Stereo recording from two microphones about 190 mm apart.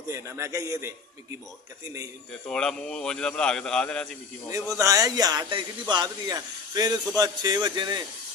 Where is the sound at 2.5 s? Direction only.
5° left (ahead or behind).